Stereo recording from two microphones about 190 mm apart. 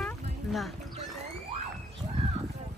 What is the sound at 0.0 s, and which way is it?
Boat, centre (ahead or behind).